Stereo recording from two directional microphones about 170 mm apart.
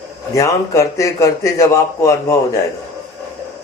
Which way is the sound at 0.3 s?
20° left (ahead or behind).